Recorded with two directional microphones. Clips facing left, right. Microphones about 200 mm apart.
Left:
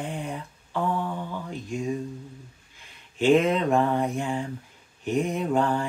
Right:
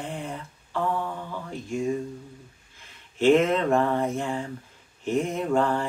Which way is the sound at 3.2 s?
15° left (ahead or behind).